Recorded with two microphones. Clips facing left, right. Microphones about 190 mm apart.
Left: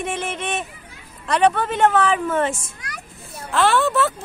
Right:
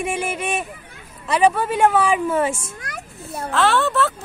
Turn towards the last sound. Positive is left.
turn(degrees=5)  # may be behind; listen again after turning